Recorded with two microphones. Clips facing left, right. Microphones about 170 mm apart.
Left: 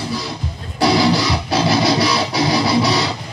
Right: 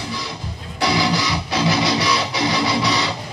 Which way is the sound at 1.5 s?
35° left (ahead or behind).